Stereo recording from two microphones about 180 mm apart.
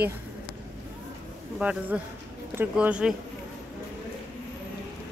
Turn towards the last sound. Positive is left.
turn(degrees=-5)  # may be behind; listen again after turning